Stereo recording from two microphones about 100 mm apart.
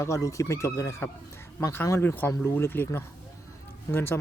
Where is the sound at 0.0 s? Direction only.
30° left (ahead or behind).